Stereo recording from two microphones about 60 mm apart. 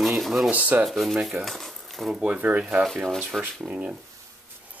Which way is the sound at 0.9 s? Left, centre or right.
Centre.